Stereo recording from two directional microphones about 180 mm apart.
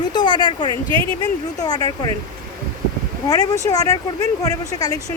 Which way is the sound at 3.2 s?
20° left (ahead or behind).